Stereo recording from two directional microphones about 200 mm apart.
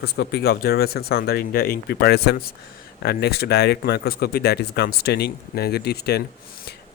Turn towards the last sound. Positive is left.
turn(degrees=50)  # may be behind; listen again after turning